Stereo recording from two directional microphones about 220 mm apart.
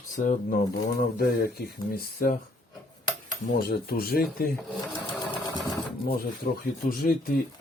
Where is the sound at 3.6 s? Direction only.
45° left (ahead or behind).